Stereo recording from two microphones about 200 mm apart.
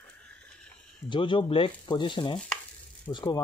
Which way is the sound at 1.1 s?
25° left (ahead or behind).